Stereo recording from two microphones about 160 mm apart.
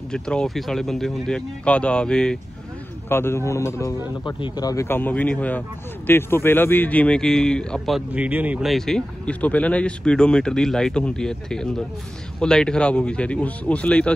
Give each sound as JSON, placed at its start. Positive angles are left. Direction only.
{"t": 0.1, "sound": "speech", "side_deg": 5}